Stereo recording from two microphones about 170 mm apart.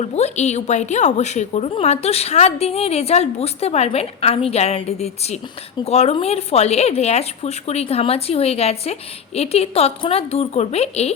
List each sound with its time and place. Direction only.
0.0 s a woman's voice: 40° left (ahead or behind)